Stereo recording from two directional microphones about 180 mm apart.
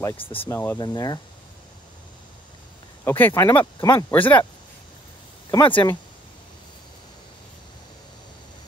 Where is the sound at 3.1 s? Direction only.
10° left (ahead or behind).